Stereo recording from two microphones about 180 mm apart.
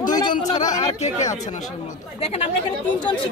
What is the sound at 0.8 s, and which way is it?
Speech, 40° left (ahead or behind).